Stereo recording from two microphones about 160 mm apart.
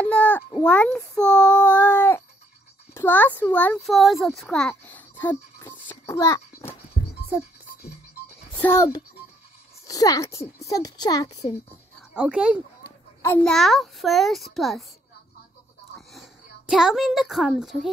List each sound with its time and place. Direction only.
0.0 s a sound: 10° left (ahead or behind)
0.6 s child singing: 10° left (ahead or behind)
2.9 s a child's voice: 15° left (ahead or behind)
8.5 s a child's voice: 15° left (ahead or behind)
12.1 s a child's voice: 5° right (ahead or behind)
16.1 s a woman's voice: centre (ahead or behind)